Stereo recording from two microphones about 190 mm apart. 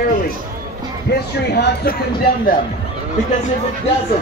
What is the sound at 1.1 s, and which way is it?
Speech, 60° left (ahead or behind).